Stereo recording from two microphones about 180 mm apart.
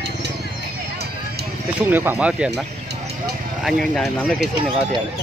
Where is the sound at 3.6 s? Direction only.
Centre (ahead or behind).